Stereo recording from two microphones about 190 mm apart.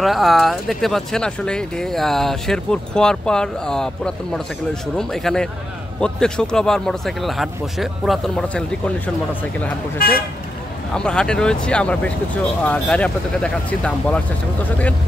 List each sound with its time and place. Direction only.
0.0 s speech: centre (ahead or behind)
9.9 s speech: 50° left (ahead or behind)
11.0 s speech: 5° left (ahead or behind)